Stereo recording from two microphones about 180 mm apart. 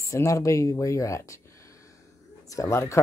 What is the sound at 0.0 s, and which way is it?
Speech, 15° left (ahead or behind).